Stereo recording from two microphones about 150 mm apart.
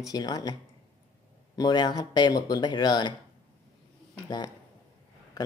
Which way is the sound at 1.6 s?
30° left (ahead or behind).